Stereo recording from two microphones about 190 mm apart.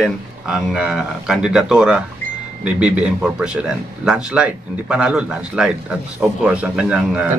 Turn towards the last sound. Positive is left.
turn(degrees=-5)  # may be behind; listen again after turning